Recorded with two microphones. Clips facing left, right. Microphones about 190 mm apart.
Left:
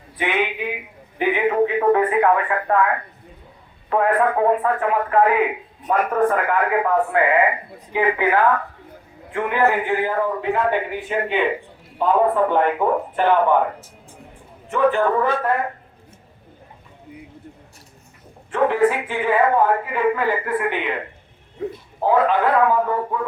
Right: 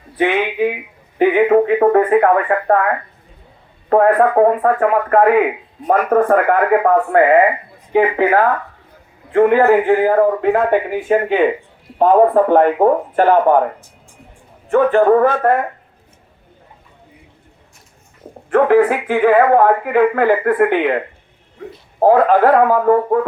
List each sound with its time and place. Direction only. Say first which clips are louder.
1.2 s a man's voice: right 7 dB; 50° right (ahead or behind)
14.7 s a man's voice: right 7 dB; 50° right (ahead or behind)
18.5 s speech: right 6 dB; 60° right (ahead or behind)
22.0 s a man's voice: right 7 dB; 50° right (ahead or behind)